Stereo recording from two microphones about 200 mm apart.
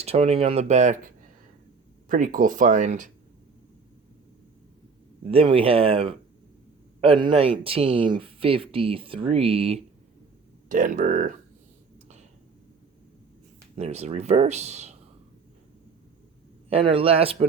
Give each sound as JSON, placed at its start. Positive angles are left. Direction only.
{"t": 0.0, "sound": "speech", "side_deg": -30}
{"t": 2.0, "sound": "speech", "side_deg": -40}
{"t": 5.3, "sound": "speech", "side_deg": -25}
{"t": 10.7, "sound": "speech", "side_deg": -40}
{"t": 13.7, "sound": "speech", "side_deg": -30}
{"t": 16.6, "sound": "speech", "side_deg": -30}